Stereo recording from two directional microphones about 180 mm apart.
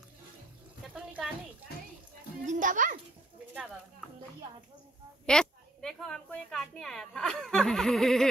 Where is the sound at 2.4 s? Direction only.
45° right (ahead or behind).